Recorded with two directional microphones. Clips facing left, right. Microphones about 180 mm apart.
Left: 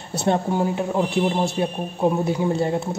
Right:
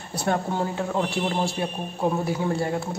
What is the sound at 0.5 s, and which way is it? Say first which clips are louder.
Speech: left 4 dB; 15° left (ahead or behind).